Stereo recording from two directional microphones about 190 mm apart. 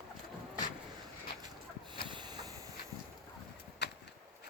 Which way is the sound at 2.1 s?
20° right (ahead or behind).